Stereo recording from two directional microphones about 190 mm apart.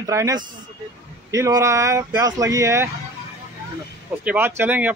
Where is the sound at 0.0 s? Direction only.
15° right (ahead or behind).